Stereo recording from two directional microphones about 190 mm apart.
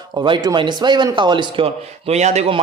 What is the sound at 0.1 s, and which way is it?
A man's voice, 20° right (ahead or behind).